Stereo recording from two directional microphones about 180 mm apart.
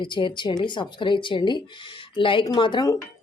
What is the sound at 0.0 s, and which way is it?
Speech, 25° left (ahead or behind).